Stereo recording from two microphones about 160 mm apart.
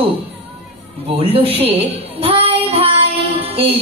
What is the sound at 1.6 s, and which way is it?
Child singing, 40° right (ahead or behind).